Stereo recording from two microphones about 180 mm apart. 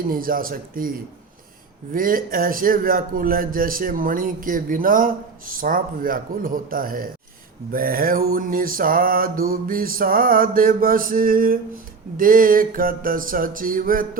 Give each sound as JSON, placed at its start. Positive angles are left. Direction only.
{"t": 0.1, "sound": "a man's voice", "side_deg": -50}